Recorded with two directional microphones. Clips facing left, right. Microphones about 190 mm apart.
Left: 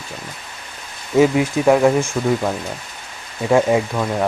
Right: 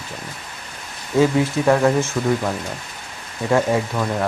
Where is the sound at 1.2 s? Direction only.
15° left (ahead or behind).